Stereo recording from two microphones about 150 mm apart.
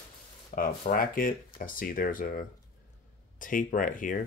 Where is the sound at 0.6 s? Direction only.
70° left (ahead or behind).